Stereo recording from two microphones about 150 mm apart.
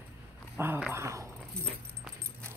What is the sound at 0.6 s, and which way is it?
Dog, 10° right (ahead or behind).